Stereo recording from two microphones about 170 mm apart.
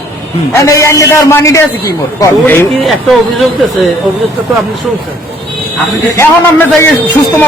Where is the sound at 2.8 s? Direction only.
Centre (ahead or behind).